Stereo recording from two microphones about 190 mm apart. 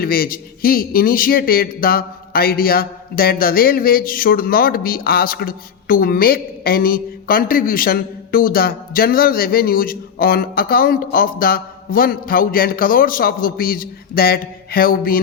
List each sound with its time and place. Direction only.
0.0 s a man's voice: 50° left (ahead or behind)